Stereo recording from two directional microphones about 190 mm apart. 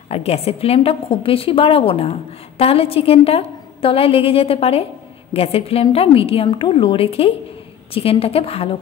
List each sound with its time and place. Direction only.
0.1 s a woman's voice: 30° left (ahead or behind)